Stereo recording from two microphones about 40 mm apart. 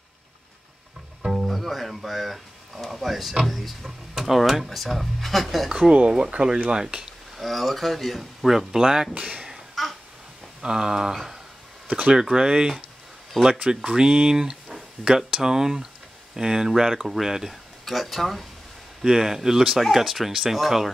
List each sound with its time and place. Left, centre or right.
1.5 s a sound: centre
3.4 s speech: centre
5.7 s speech: centre
7.0 s speech: centre
9.8 s babbling: centre
10.6 s speech: centre
11.9 s speech: right
12.2 s speech: centre
13.4 s speech: centre
13.8 s speech: right; by 18.5 s centre
19.0 s speech: centre